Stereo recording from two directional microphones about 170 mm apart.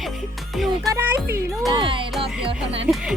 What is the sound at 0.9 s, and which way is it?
Speech, 15° right (ahead or behind).